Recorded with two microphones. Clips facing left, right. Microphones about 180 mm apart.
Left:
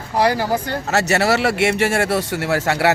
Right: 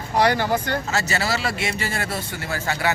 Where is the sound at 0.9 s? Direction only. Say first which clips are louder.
Left 12 dB; 70° left (ahead or behind).